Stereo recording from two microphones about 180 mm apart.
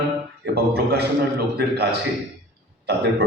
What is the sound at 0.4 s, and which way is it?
A man's voice, 65° right (ahead or behind).